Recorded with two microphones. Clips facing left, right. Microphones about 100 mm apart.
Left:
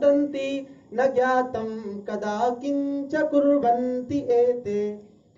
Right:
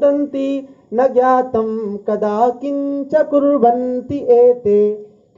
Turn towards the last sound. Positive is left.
turn(degrees=-55)  # may be behind; listen again after turning